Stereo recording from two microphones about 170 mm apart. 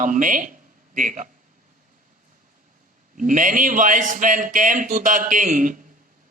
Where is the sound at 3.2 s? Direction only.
50° right (ahead or behind).